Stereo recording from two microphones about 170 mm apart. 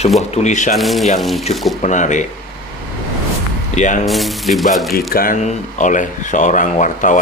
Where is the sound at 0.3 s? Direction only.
40° left (ahead or behind).